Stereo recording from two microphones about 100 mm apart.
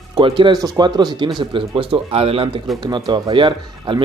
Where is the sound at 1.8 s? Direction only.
65° right (ahead or behind).